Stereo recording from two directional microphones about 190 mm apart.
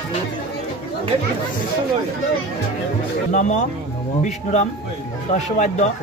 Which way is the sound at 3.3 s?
40° left (ahead or behind).